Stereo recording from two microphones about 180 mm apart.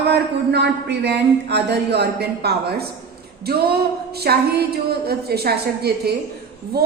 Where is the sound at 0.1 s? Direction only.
70° right (ahead or behind).